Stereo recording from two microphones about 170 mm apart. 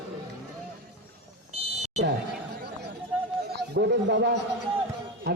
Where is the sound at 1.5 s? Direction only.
40° right (ahead or behind).